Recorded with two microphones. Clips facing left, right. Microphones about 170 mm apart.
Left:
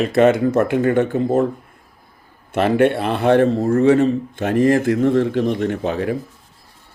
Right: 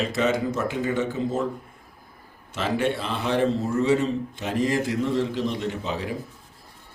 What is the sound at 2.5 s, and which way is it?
A man's voice, 60° left (ahead or behind).